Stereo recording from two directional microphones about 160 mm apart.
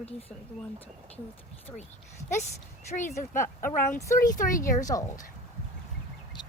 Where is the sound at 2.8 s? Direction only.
50° left (ahead or behind).